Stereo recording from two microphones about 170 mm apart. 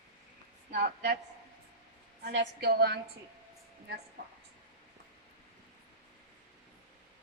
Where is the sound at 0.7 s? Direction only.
65° right (ahead or behind).